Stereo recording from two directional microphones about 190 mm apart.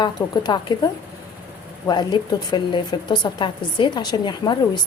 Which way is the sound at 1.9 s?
20° left (ahead or behind).